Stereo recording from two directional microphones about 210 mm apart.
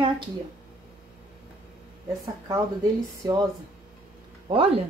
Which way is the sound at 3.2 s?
20° right (ahead or behind).